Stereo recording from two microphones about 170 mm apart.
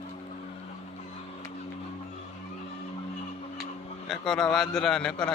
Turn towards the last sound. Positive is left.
turn(degrees=5)  # may be behind; listen again after turning